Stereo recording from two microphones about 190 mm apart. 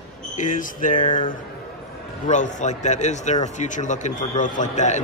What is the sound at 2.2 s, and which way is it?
A man's voice, 40° left (ahead or behind).